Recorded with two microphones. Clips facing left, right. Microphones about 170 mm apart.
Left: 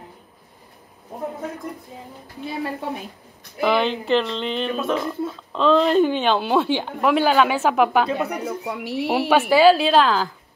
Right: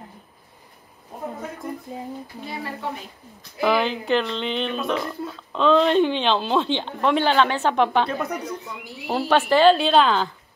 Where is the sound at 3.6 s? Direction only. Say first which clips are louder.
Left 1 dB; centre (ahead or behind).